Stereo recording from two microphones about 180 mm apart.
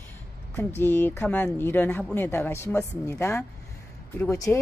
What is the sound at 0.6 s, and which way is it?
A woman's voice, 10° left (ahead or behind).